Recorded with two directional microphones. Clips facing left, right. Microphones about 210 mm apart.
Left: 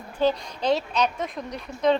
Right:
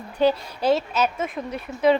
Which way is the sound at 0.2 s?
10° right (ahead or behind).